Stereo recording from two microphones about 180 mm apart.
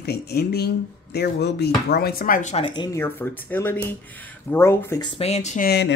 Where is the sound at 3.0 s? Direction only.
10° left (ahead or behind).